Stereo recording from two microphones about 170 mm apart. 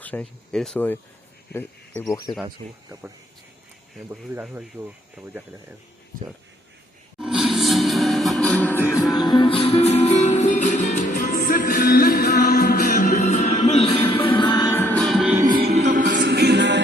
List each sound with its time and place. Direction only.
0.0 s speech: 10° left (ahead or behind)
4.1 s speech: 10° right (ahead or behind)
7.2 s music: 5° right (ahead or behind)
9.1 s music: 25° left (ahead or behind)
14.6 s music: 15° left (ahead or behind); by 15.4 s centre (ahead or behind)
15.4 s music: 25° right (ahead or behind)
16.0 s music: 60° right (ahead or behind); by 16.8 s 90° right